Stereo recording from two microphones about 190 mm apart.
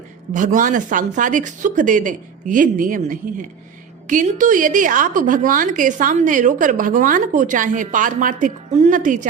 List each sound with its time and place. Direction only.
0.3 s a woman's voice: 45° right (ahead or behind)